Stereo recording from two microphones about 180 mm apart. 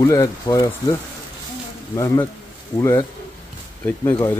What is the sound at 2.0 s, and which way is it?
Speech, 20° left (ahead or behind).